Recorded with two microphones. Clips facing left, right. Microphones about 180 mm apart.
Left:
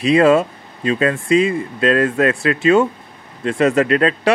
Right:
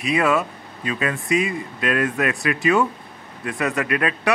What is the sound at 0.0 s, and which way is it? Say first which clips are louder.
Speech: left 8 dB; 30° left (ahead or behind).